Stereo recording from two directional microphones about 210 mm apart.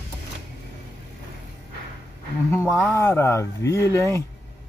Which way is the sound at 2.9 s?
10° left (ahead or behind).